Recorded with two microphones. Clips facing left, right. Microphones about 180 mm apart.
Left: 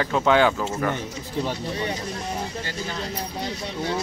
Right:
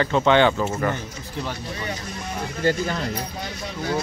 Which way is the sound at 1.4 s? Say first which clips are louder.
Left 2 dB; 30° left (ahead or behind).